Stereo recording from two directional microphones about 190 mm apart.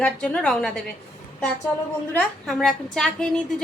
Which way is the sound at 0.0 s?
5° left (ahead or behind).